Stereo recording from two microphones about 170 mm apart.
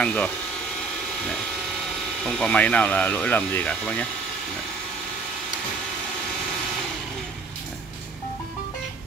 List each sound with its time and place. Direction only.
0.0 s speech: 5° left (ahead or behind)
2.2 s speech: 5° left (ahead or behind)